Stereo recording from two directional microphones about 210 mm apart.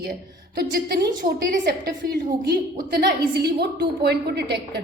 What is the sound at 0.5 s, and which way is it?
A woman's voice, 50° right (ahead or behind).